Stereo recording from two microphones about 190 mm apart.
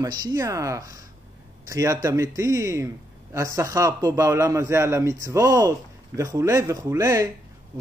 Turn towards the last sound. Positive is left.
turn(degrees=-15)  # may be behind; listen again after turning